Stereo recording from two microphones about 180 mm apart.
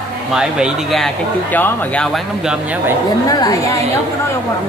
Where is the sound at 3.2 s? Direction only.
20° left (ahead or behind).